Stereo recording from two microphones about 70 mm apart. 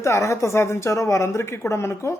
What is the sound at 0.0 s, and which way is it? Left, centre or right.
Speech, left.